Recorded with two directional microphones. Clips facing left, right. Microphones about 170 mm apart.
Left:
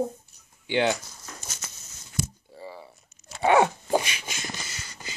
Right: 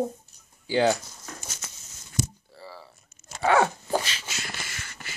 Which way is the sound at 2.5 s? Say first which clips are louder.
Left 4 dB; 20° left (ahead or behind).